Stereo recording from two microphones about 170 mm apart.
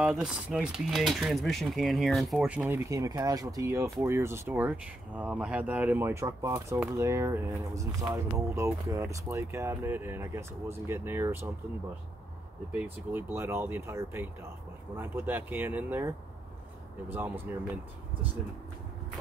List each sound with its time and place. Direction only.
0.0 s speech: 5° right (ahead or behind)
12.7 s speech: 10° right (ahead or behind)